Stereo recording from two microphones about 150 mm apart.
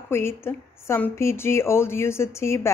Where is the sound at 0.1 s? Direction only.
15° left (ahead or behind).